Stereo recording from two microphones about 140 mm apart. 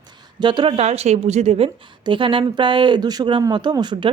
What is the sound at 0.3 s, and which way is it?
A woman's voice, 35° right (ahead or behind).